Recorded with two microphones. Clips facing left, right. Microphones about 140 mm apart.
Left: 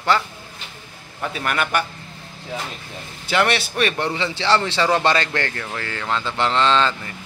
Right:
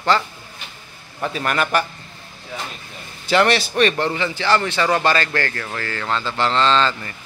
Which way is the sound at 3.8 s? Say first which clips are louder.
Right 3 dB; 10° left (ahead or behind).